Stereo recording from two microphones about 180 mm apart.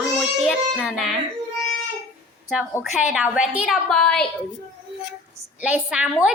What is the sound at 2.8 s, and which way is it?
A woman's voice, centre (ahead or behind).